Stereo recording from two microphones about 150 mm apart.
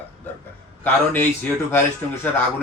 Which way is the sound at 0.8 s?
10° left (ahead or behind).